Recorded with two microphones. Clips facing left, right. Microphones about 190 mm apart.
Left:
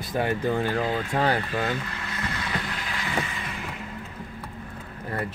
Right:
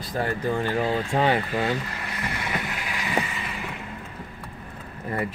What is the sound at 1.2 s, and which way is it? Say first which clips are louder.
Speech: right 2 dB; 10° right (ahead or behind).